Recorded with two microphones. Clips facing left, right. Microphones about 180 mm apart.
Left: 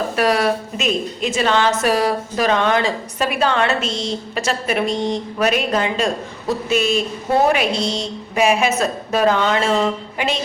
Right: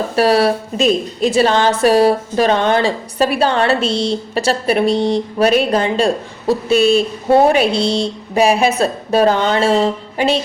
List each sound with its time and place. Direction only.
0.2 s a woman's voice: 30° right (ahead or behind)